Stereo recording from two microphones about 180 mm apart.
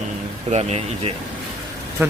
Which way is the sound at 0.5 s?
35° right (ahead or behind).